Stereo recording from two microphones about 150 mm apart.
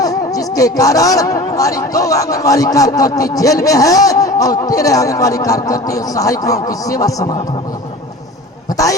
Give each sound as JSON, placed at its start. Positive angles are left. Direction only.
{"t": 0.0, "sound": "speech", "side_deg": 25}